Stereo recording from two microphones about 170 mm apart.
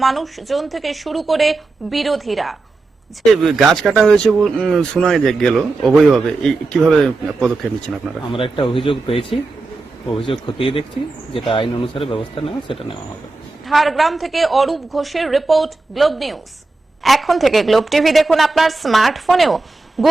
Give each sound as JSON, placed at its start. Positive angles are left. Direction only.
{"t": 0.0, "sound": "speech", "side_deg": 0}
{"t": 8.3, "sound": "speech", "side_deg": 30}
{"t": 10.4, "sound": "speech", "side_deg": 30}
{"t": 13.7, "sound": "speech", "side_deg": 0}